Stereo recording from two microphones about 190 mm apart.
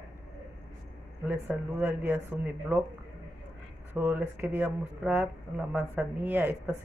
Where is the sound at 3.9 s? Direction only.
10° right (ahead or behind).